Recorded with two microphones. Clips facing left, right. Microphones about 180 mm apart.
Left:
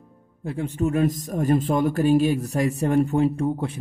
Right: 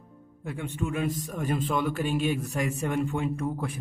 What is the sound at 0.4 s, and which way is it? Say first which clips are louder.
A man's voice: left 7 dB; 30° left (ahead or behind).